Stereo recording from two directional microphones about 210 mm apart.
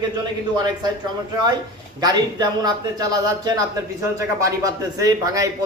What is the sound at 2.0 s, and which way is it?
Speech, 20° right (ahead or behind).